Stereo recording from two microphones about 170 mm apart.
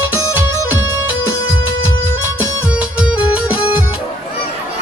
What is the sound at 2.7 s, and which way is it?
Music, 10° right (ahead or behind).